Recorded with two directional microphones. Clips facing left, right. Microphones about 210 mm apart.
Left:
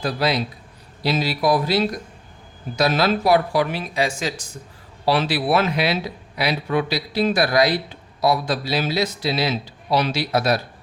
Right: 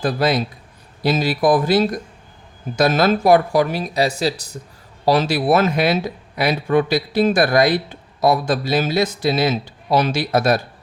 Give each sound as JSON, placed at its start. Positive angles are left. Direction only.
{"t": 0.0, "sound": "speech", "side_deg": -50}